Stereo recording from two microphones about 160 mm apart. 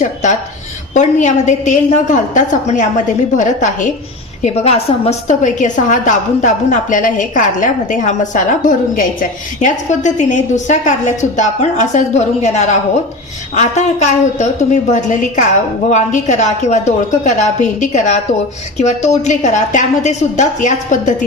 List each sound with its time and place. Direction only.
0.0 s a woman's voice: 50° left (ahead or behind)
4.4 s a woman's voice: 40° left (ahead or behind)